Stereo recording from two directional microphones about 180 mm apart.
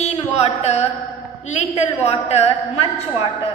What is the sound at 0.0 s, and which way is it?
Carnatic music, 35° left (ahead or behind).